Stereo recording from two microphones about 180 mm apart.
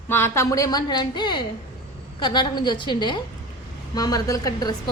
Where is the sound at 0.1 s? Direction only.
15° left (ahead or behind).